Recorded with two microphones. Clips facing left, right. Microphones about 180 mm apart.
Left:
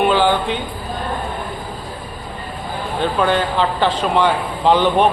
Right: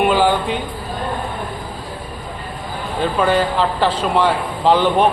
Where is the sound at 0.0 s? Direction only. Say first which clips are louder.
Even; 5° right (ahead or behind).